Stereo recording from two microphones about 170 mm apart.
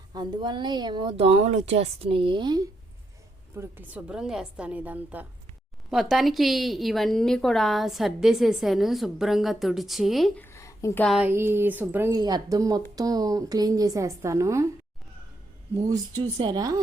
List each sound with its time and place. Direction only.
0.1 s a woman's voice: 25° right (ahead or behind)
3.5 s a woman's voice: 15° right (ahead or behind)
10.4 s a sound: 15° left (ahead or behind)
11.0 s a woman's voice: centre (ahead or behind)
11.3 s a woman's voice: 15° right (ahead or behind)
15.7 s a woman's voice: 20° right (ahead or behind)